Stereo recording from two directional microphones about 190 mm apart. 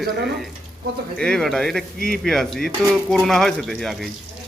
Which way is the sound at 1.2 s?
5° left (ahead or behind).